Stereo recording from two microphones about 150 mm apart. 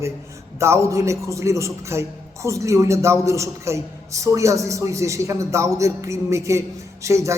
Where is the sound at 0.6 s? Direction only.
20° right (ahead or behind).